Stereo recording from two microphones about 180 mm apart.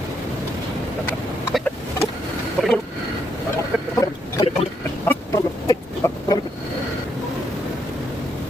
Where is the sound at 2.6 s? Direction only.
Centre (ahead or behind).